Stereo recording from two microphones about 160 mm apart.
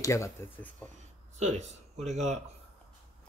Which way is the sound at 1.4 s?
45° right (ahead or behind).